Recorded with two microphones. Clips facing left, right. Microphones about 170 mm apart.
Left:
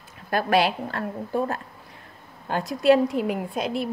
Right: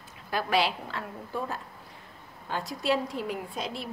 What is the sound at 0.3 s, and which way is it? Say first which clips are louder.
A woman's voice: left 6 dB; 50° left (ahead or behind).